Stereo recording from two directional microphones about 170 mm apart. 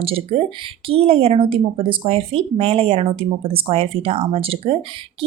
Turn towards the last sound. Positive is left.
turn(degrees=-35)  # may be behind; listen again after turning